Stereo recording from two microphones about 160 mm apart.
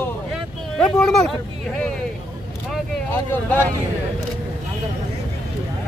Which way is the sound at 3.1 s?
10° left (ahead or behind).